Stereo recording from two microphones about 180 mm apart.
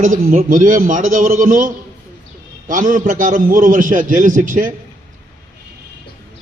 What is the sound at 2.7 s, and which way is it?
A man's voice, 45° right (ahead or behind).